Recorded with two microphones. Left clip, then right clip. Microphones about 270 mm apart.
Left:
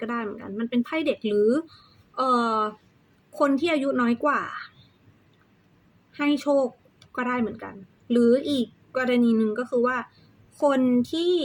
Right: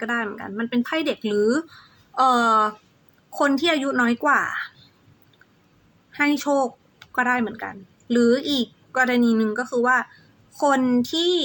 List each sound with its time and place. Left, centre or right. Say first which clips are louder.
0.0 s speech: right 5 dB; centre
2.5 s speech: right 7 dB; right
3.3 s speech: right 2 dB; centre
6.1 s a woman's voice: right 2 dB; centre